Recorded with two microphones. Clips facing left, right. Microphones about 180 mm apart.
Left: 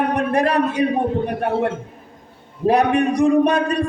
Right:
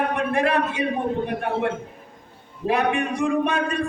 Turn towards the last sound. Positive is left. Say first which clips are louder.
# left 6 dB
turn(degrees=40)  # may be behind; listen again after turning